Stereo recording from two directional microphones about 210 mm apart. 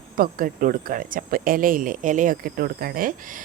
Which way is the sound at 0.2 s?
40° right (ahead or behind).